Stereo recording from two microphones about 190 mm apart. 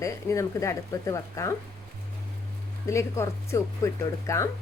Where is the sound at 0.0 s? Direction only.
15° left (ahead or behind).